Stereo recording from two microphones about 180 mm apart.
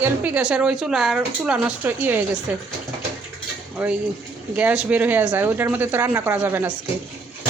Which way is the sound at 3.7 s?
5° right (ahead or behind).